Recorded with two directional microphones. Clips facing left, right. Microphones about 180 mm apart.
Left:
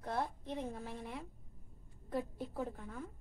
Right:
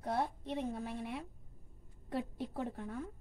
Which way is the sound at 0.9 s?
70° right (ahead or behind).